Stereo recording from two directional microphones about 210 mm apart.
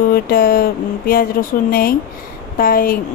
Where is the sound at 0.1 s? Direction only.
45° left (ahead or behind).